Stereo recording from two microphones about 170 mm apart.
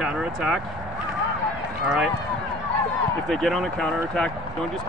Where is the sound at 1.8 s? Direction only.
5° right (ahead or behind).